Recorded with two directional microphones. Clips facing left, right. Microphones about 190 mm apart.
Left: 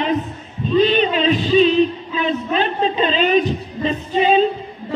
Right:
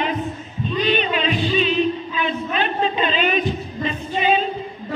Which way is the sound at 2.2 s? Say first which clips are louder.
Left 5 dB; 35° left (ahead or behind).